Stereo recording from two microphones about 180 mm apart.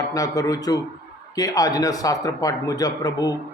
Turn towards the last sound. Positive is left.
turn(degrees=20)  # may be behind; listen again after turning